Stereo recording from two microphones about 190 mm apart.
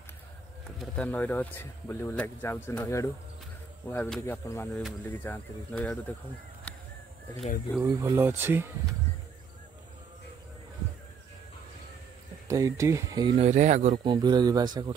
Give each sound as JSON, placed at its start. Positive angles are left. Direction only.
{"t": 0.7, "sound": "speech", "side_deg": 5}
{"t": 7.8, "sound": "speech", "side_deg": -15}
{"t": 12.4, "sound": "speech", "side_deg": -15}
{"t": 13.4, "sound": "speech", "side_deg": -35}
{"t": 14.0, "sound": "speech", "side_deg": -25}